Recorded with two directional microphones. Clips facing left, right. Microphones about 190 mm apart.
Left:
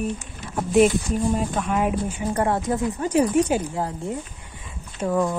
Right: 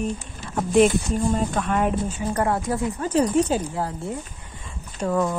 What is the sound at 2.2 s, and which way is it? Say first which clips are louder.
A woman's voice: left 1 dB; 25° left (ahead or behind).